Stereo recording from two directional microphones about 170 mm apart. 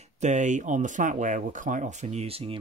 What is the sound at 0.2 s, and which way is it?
Speech, 45° right (ahead or behind).